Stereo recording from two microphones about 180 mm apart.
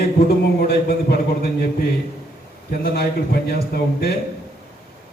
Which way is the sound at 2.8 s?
60° left (ahead or behind).